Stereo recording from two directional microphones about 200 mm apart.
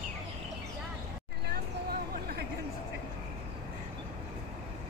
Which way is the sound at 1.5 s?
50° right (ahead or behind).